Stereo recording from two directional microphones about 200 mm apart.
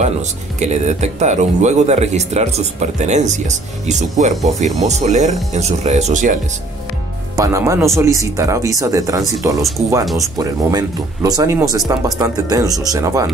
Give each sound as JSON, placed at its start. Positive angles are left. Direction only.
{"t": 0.6, "sound": "speech", "side_deg": -35}
{"t": 7.3, "sound": "speech", "side_deg": -15}